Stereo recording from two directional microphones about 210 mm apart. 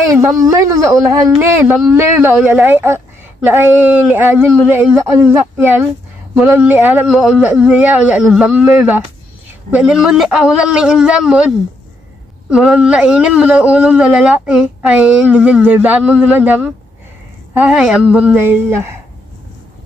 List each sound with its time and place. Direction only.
0.1 s a man's voice: 15° right (ahead or behind)